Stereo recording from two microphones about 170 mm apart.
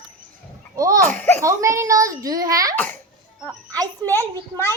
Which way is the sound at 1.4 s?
20° right (ahead or behind).